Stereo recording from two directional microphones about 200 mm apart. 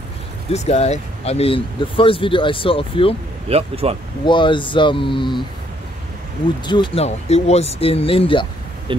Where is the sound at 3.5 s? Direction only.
30° right (ahead or behind).